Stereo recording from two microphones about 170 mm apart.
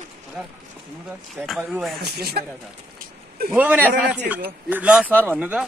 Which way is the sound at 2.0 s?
65° right (ahead or behind).